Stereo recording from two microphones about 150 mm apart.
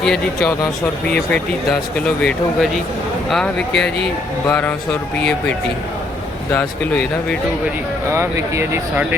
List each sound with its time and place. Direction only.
0.0 s speech: 5° left (ahead or behind)
6.5 s speech: 10° left (ahead or behind)
8.1 s speech: 20° right (ahead or behind)